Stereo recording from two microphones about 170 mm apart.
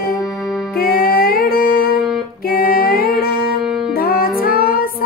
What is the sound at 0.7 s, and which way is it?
Music, 60° left (ahead or behind).